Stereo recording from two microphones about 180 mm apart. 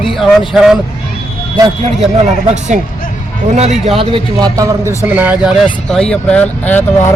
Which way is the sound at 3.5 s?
35° right (ahead or behind).